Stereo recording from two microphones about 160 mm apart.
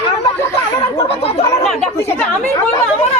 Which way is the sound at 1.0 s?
40° left (ahead or behind).